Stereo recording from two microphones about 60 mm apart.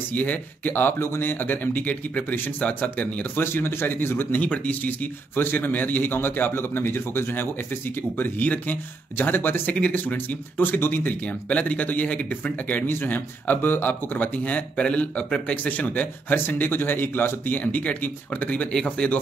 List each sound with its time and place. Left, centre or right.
0.1 s a man's voice: left
3.3 s a man's voice: left
4.3 s a man's voice: left
11.2 s speech: left
12.8 s speech: left; by 15.5 s centre
15.5 s speech: left
18.7 s speech: centre